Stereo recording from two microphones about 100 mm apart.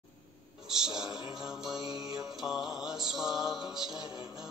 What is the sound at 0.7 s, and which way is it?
Mantra, 5° right (ahead or behind).